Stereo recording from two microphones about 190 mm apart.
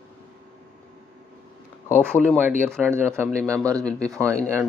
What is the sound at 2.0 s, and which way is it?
Speech, 10° right (ahead or behind).